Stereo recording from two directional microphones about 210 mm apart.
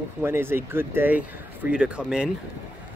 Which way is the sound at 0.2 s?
10° right (ahead or behind).